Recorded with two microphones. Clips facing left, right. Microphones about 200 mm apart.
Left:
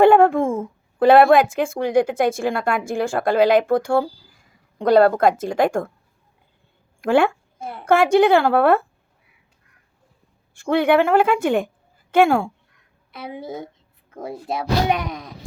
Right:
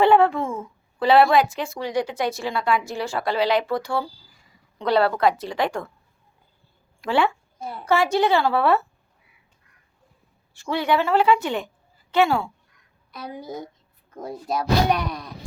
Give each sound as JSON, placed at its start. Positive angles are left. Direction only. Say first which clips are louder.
{"t": 0.0, "sound": "speech", "louder": "left 4 dB", "side_deg": 50}
{"t": 7.0, "sound": "speech", "louder": "left 5 dB", "side_deg": 50}
{"t": 10.5, "sound": "speech", "louder": "left 6 dB", "side_deg": 50}
{"t": 13.1, "sound": "a woman's voice", "louder": "left 3 dB", "side_deg": 25}